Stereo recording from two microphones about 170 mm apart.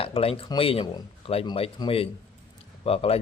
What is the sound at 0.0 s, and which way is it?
Speech, 35° left (ahead or behind).